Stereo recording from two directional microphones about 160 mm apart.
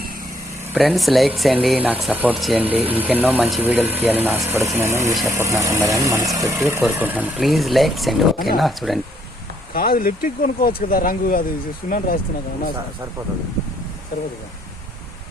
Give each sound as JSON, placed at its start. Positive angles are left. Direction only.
{"t": 0.7, "sound": "speech", "side_deg": 0}
{"t": 9.7, "sound": "speech", "side_deg": 65}